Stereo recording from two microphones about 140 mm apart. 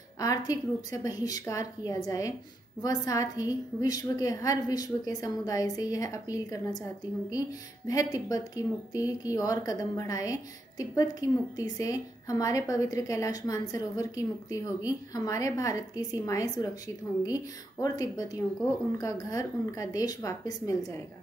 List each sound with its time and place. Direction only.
0.2 s a woman's voice: 25° left (ahead or behind)